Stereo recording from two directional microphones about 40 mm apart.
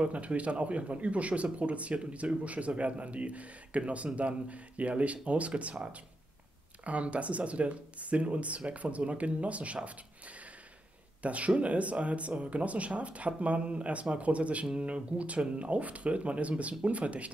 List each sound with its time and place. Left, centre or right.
0.0 s speech: right
11.2 s speech: right